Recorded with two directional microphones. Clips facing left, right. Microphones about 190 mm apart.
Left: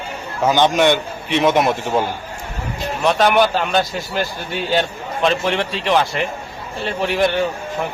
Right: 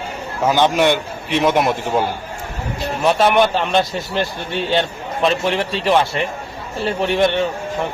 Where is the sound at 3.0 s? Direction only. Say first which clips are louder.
Even; centre (ahead or behind).